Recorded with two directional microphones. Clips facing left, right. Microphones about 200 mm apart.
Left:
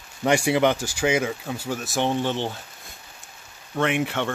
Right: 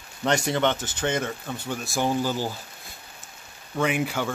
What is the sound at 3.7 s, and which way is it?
Speech, centre (ahead or behind).